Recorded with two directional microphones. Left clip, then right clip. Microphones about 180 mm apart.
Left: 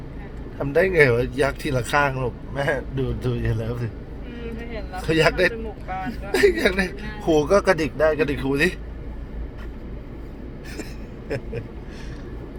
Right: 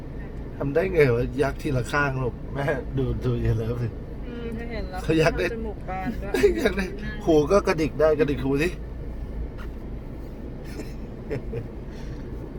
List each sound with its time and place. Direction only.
0.6 s a man's voice: 20° left (ahead or behind)
4.9 s a man's voice: 25° left (ahead or behind)